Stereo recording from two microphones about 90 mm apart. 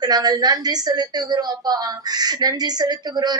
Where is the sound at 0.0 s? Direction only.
50° right (ahead or behind).